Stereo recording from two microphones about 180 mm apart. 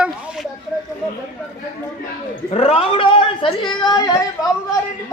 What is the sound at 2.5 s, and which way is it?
A woman's voice, 35° left (ahead or behind).